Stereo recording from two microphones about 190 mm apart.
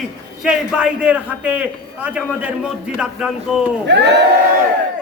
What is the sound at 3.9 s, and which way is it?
Speech, 65° right (ahead or behind).